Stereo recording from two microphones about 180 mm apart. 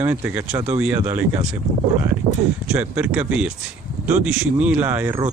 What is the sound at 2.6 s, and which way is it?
Speech, 10° right (ahead or behind).